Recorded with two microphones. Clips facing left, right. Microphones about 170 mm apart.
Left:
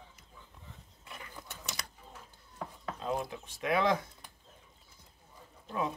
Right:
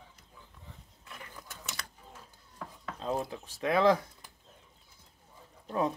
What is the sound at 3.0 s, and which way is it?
Speech, 30° right (ahead or behind).